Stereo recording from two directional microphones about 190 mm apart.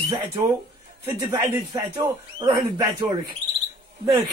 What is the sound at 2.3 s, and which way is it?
Speech, 20° right (ahead or behind).